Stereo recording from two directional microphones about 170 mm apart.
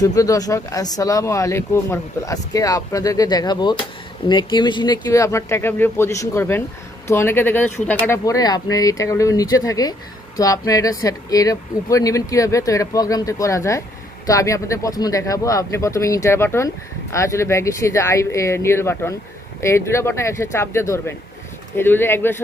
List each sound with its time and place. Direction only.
0.0 s speech: 20° left (ahead or behind)